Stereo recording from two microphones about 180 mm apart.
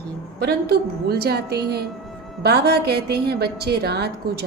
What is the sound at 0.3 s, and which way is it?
A woman's voice, 60° right (ahead or behind).